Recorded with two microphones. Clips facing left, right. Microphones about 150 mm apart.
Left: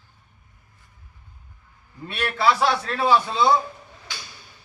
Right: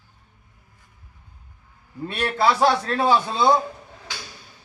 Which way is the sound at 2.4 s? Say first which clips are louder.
Right 2 dB; 40° right (ahead or behind).